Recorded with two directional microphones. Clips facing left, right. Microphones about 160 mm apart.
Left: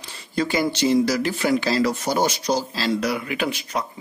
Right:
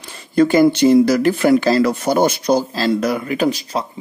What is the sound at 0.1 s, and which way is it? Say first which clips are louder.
Speech: right 10 dB; 50° right (ahead or behind).